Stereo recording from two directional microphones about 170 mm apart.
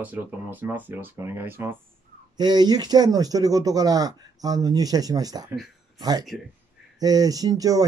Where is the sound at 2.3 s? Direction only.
25° right (ahead or behind).